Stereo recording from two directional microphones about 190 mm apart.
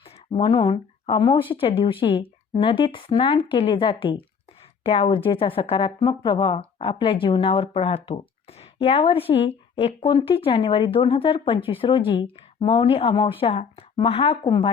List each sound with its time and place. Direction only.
0.3 s speech: 30° left (ahead or behind)